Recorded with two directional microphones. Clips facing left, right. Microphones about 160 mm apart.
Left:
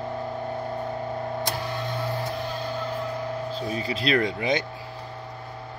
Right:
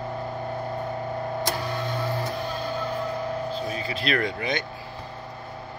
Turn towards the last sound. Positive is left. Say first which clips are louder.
# left 2 dB
turn(degrees=25)  # may be behind; listen again after turning